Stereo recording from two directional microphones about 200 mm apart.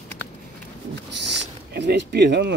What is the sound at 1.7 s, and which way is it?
Speech, 60° right (ahead or behind).